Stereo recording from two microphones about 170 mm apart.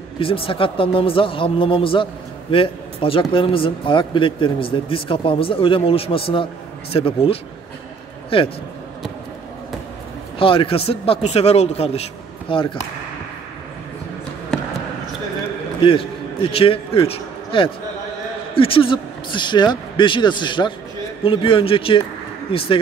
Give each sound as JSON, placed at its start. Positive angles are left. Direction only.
{"t": 0.2, "sound": "speech", "side_deg": 30}
{"t": 10.4, "sound": "speech", "side_deg": 30}
{"t": 14.5, "sound": "basketball bounce", "side_deg": 5}
{"t": 15.8, "sound": "a man's voice", "side_deg": 30}